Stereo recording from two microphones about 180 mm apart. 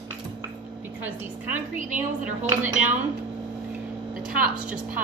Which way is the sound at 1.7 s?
45° right (ahead or behind).